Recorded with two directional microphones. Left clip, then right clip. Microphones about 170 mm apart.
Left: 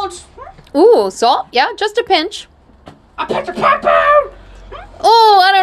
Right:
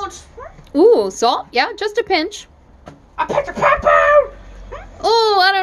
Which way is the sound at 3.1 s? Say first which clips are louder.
Even; 20° right (ahead or behind).